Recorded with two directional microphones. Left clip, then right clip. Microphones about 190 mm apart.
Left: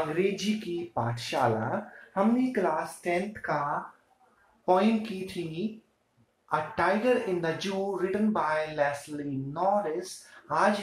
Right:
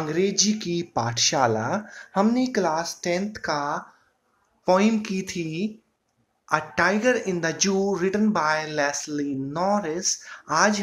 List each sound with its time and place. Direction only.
0.1 s speech: 65° right (ahead or behind)
4.6 s speech: 45° right (ahead or behind)